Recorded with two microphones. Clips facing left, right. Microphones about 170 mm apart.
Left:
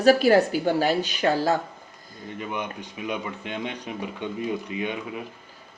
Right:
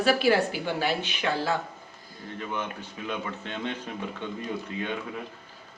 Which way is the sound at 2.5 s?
15° left (ahead or behind).